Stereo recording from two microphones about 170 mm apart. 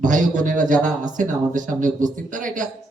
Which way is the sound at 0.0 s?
50° right (ahead or behind).